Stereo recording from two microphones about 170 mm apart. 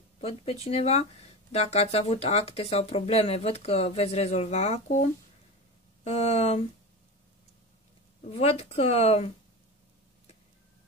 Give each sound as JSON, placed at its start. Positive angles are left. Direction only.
{"t": 0.2, "sound": "speech", "side_deg": 35}
{"t": 6.0, "sound": "speech", "side_deg": 40}
{"t": 8.3, "sound": "speech", "side_deg": 40}